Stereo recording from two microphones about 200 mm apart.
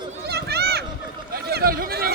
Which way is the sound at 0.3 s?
55° right (ahead or behind).